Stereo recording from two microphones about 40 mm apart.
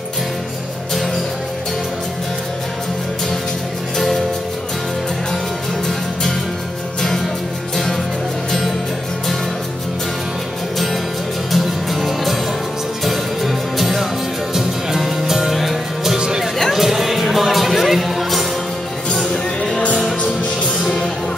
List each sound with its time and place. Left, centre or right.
8.5 s music: centre
11.5 s music: centre
16.2 s music: centre
16.7 s music: centre
19.3 s music: centre